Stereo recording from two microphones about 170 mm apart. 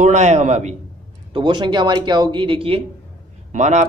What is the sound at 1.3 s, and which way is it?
Speech, 30° right (ahead or behind).